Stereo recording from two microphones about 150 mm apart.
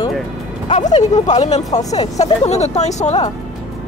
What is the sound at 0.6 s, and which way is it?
Speech, 50° left (ahead or behind).